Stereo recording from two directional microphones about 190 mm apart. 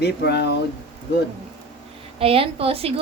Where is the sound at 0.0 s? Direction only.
60° left (ahead or behind).